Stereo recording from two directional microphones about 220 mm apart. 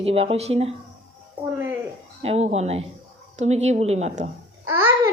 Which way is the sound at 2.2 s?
30° right (ahead or behind).